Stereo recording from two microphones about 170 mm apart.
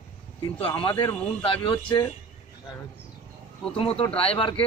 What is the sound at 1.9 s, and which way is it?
Speech, 25° left (ahead or behind).